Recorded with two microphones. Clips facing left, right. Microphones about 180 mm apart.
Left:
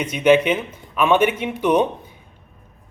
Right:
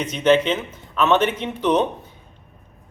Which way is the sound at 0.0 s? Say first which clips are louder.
Left 2 dB; 10° left (ahead or behind).